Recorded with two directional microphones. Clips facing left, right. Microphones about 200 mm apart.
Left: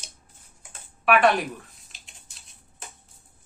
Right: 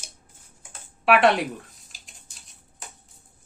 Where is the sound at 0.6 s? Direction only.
25° right (ahead or behind).